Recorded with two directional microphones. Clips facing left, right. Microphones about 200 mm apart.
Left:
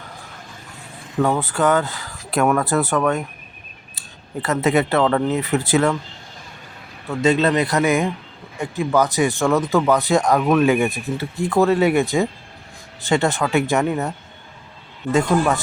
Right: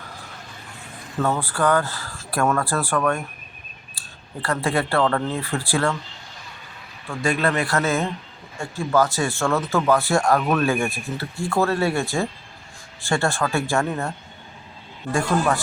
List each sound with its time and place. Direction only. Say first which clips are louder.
1.2 s speech: left 3 dB; 20° left (ahead or behind)
4.4 s speech: left 5 dB; 20° left (ahead or behind)
7.2 s speech: left 5 dB; 20° left (ahead or behind)
15.1 s speech: left 4 dB; 20° left (ahead or behind)